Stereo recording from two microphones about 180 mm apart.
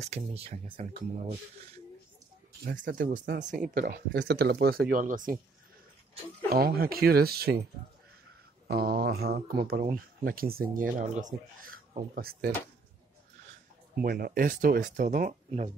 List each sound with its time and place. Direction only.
0.0 s speech: 35° right (ahead or behind)
2.6 s speech: 55° right (ahead or behind)
6.5 s speech: 55° right (ahead or behind)
8.6 s speech: 60° right (ahead or behind)
13.9 s speech: 55° right (ahead or behind)